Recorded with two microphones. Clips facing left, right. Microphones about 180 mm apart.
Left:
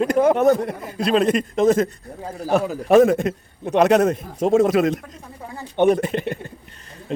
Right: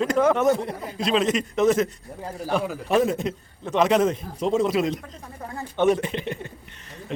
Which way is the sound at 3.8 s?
65° left (ahead or behind).